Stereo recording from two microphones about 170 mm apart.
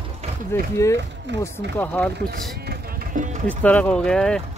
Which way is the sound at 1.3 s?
90° right.